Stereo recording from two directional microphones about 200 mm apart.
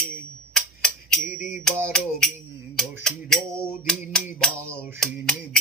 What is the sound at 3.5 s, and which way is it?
Music, 15° right (ahead or behind).